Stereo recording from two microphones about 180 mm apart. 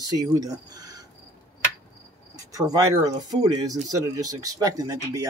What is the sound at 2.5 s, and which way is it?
A man's voice, 20° right (ahead or behind).